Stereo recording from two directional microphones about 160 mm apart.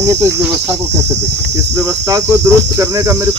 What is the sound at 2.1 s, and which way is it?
Cricket, 20° right (ahead or behind).